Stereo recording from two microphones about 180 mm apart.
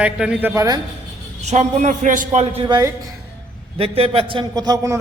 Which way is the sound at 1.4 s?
40° right (ahead or behind).